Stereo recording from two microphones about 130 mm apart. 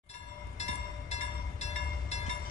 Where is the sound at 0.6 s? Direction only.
60° left (ahead or behind).